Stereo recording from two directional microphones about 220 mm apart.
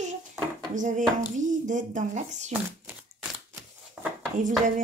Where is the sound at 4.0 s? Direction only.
5° right (ahead or behind).